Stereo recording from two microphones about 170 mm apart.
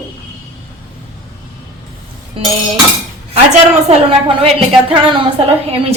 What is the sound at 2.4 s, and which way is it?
Speech, 30° right (ahead or behind).